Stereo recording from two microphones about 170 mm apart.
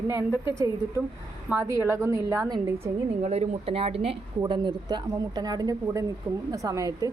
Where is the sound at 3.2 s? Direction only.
40° right (ahead or behind); by 7.0 s 20° right (ahead or behind).